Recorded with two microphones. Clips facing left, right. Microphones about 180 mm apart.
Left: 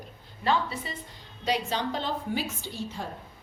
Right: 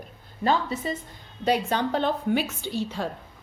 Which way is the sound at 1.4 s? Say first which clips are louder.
Right 5 dB; 55° right (ahead or behind).